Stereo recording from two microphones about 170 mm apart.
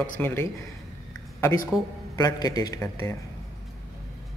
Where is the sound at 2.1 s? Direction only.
20° left (ahead or behind).